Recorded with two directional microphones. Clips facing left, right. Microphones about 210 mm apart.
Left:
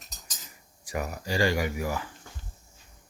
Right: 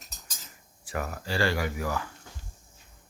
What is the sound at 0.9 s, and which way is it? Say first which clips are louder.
Speech: left 1 dB; 15° left (ahead or behind).